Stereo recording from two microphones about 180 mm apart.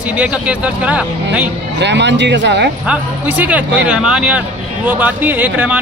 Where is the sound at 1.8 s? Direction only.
75° right (ahead or behind).